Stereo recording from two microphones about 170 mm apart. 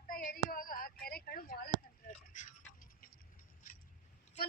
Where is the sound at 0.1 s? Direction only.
55° left (ahead or behind).